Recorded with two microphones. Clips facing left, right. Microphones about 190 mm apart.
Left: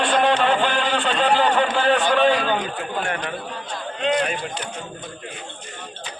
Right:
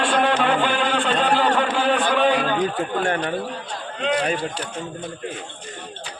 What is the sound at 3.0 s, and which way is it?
Speech, 35° right (ahead or behind).